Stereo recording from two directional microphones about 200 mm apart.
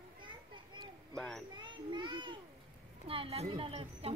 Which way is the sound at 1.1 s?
Centre (ahead or behind).